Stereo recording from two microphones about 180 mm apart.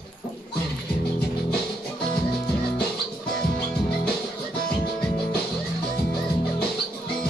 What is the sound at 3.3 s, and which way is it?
Music, 5° left (ahead or behind).